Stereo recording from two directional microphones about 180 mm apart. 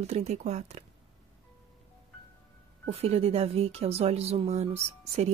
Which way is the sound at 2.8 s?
35° right (ahead or behind).